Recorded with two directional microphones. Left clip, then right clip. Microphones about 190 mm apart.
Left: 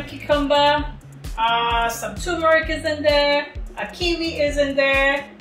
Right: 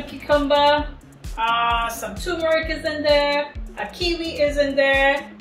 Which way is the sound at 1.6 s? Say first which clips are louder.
Left 1 dB; centre (ahead or behind).